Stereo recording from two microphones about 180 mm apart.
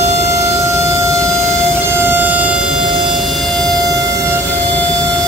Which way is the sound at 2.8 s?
25° right (ahead or behind).